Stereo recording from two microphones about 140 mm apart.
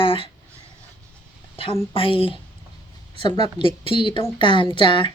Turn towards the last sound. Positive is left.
turn(degrees=35)  # may be behind; listen again after turning